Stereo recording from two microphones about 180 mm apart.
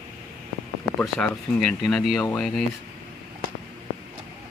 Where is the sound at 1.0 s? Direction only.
5° left (ahead or behind).